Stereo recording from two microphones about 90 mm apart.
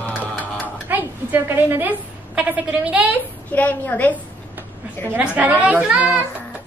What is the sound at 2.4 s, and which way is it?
Speech, 15° right (ahead or behind).